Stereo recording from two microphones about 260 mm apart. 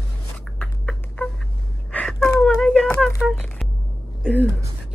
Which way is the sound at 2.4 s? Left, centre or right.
Centre.